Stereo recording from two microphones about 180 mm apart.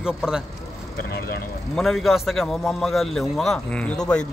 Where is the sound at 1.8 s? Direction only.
Centre (ahead or behind).